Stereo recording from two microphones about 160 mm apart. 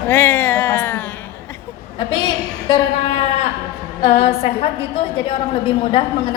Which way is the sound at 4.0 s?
40° left (ahead or behind).